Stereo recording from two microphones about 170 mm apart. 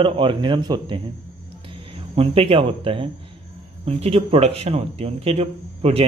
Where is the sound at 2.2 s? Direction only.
35° right (ahead or behind).